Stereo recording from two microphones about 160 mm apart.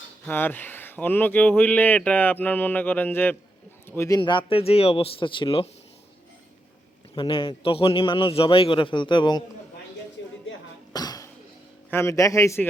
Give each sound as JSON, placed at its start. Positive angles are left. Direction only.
{"t": 0.3, "sound": "a man's voice", "side_deg": 10}
{"t": 4.2, "sound": "a man's voice", "side_deg": 30}
{"t": 7.2, "sound": "a man's voice", "side_deg": 30}
{"t": 10.9, "sound": "cough", "side_deg": 25}
{"t": 11.9, "sound": "a man's voice", "side_deg": 15}